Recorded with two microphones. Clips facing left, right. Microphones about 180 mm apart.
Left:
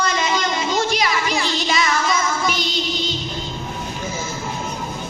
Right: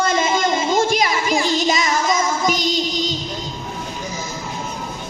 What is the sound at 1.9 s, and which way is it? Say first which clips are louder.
Child singing: right 2 dB; 45° right (ahead or behind).